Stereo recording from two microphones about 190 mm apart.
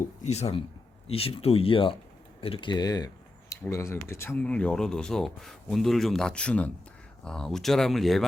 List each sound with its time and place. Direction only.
0.2 s speech: 35° left (ahead or behind); by 8.2 s centre (ahead or behind)